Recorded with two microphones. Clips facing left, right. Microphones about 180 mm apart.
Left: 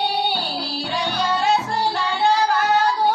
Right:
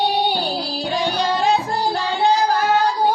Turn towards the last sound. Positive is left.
turn(degrees=-40)  # may be behind; listen again after turning